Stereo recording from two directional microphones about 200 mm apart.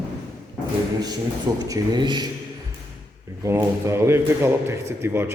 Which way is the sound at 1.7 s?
20° right (ahead or behind).